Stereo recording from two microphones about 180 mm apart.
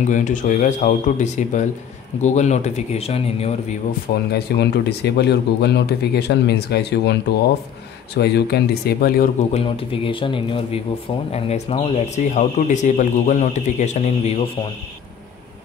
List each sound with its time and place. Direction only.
0.0 s speech: 45° left (ahead or behind)
4.1 s speech: 60° left (ahead or behind)
9.4 s speech: 35° left (ahead or behind)